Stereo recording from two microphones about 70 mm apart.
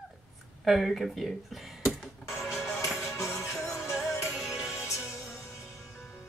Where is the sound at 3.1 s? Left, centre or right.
Left.